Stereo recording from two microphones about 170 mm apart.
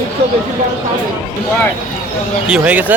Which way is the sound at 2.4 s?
5° right (ahead or behind).